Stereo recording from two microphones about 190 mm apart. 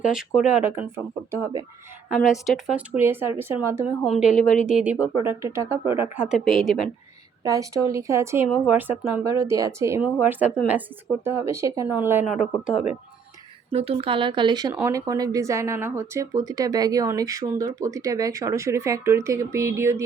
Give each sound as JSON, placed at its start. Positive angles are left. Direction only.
{"t": 0.0, "sound": "speech", "side_deg": 0}
{"t": 2.0, "sound": "speech", "side_deg": 0}
{"t": 4.0, "sound": "speech", "side_deg": 0}
{"t": 7.4, "sound": "speech", "side_deg": -15}
{"t": 13.7, "sound": "speech", "side_deg": -30}